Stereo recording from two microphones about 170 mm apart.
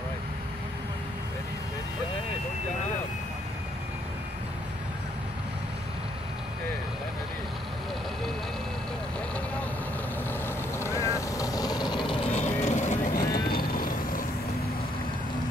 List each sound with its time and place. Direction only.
10.4 s vehicle: 15° left (ahead or behind); by 14.2 s 55° left (ahead or behind)